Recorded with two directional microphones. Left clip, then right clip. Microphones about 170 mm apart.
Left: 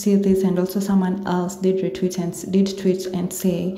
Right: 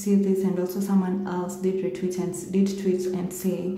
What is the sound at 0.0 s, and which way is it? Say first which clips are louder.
A woman's voice: left 5 dB; 35° left (ahead or behind).